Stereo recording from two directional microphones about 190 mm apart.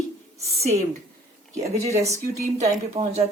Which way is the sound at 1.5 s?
15° right (ahead or behind).